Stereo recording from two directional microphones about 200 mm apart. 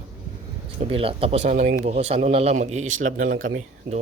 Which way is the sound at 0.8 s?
25° right (ahead or behind).